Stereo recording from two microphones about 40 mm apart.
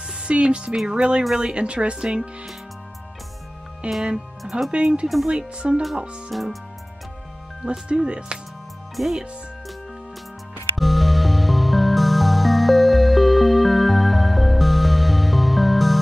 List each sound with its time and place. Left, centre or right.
0.2 s speech: right
3.8 s speech: right
4.4 s speech: centre
4.6 s speech: centre
5.0 s speech: centre
5.6 s speech: centre
6.3 s speech: centre
7.9 s speech: right
9.0 s speech: centre
10.8 s music: centre